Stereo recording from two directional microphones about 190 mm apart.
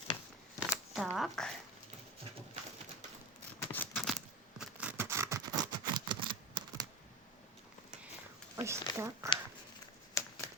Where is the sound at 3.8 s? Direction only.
10° left (ahead or behind).